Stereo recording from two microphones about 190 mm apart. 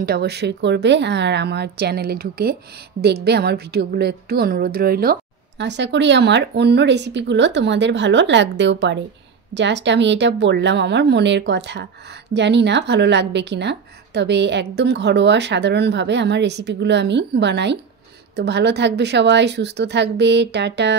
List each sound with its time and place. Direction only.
0.0 s a woman's voice: 55° right (ahead or behind)
5.6 s a woman's voice: 65° right (ahead or behind)